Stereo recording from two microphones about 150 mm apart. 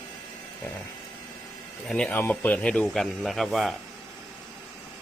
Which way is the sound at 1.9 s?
5° left (ahead or behind).